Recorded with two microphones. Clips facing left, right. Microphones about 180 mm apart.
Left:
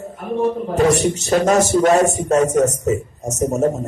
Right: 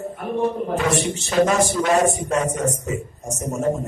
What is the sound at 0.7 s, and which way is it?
A man's voice, 40° left (ahead or behind).